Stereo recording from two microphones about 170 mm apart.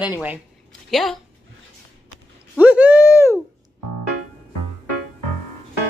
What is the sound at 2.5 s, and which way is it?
Speech, 10° right (ahead or behind).